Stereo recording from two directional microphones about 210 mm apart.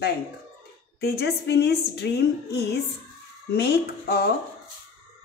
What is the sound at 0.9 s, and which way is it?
A woman's voice, 50° left (ahead or behind).